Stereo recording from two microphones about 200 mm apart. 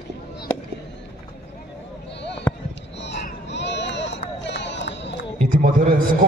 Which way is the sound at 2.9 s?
60° left (ahead or behind).